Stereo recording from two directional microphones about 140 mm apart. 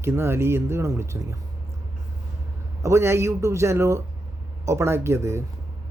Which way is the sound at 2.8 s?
20° right (ahead or behind).